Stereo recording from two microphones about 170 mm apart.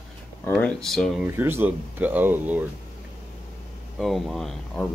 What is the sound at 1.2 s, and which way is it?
Speech, 15° right (ahead or behind).